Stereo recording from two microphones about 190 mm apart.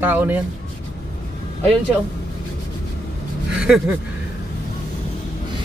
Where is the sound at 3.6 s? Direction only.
Centre (ahead or behind).